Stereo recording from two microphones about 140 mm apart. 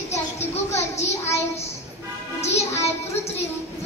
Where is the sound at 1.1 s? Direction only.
20° left (ahead or behind).